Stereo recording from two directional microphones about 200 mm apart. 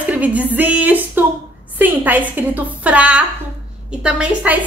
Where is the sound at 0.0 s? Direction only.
5° right (ahead or behind).